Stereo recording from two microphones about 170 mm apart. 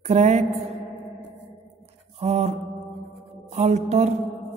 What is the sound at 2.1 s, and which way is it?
Mantra, 40° right (ahead or behind).